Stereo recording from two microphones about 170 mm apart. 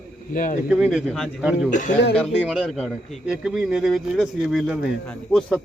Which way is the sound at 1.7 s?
45° left (ahead or behind).